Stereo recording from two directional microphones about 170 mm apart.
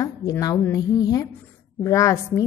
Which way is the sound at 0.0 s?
20° left (ahead or behind).